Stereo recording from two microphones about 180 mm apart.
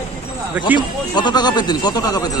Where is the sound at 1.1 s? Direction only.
25° left (ahead or behind).